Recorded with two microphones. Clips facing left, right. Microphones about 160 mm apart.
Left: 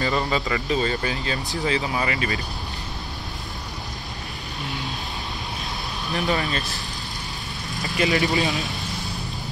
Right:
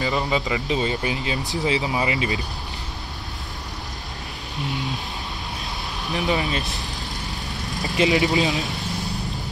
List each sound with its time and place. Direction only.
0.0 s speech: 10° right (ahead or behind)
6.1 s speech: 15° right (ahead or behind)
7.8 s speech: 20° right (ahead or behind)